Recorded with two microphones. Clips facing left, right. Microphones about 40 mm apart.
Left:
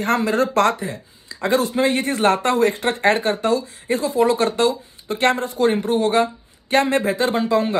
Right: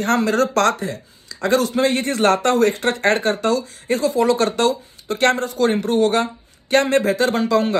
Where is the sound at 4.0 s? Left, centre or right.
Left.